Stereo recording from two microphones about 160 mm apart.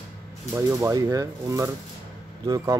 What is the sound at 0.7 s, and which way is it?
Speech, 20° right (ahead or behind).